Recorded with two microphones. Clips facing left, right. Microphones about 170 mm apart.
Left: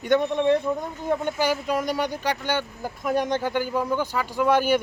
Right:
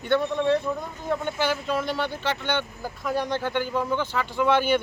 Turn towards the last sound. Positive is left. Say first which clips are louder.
# left 1 dB
turn(degrees=10)  # may be behind; listen again after turning